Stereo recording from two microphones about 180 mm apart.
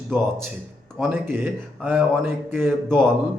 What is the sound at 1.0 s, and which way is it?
Speech, 10° right (ahead or behind).